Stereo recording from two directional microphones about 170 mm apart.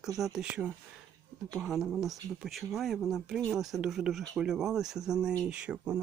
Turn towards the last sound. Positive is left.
turn(degrees=-10)  # may be behind; listen again after turning